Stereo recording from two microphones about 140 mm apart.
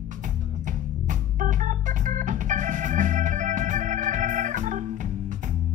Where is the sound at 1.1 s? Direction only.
65° right (ahead or behind).